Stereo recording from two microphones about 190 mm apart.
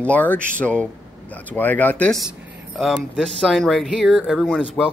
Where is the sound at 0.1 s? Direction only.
10° left (ahead or behind).